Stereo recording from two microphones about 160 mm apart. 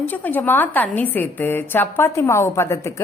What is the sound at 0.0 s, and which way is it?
Speech, 10° left (ahead or behind).